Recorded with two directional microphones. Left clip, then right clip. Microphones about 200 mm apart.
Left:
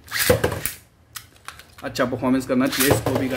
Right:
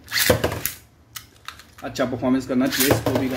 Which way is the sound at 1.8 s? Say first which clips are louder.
Left 1 dB; 10° left (ahead or behind).